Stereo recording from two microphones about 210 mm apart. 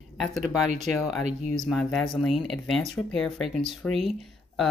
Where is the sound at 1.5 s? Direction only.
Centre (ahead or behind).